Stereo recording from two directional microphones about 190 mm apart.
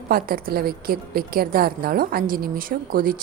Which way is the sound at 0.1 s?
50° right (ahead or behind).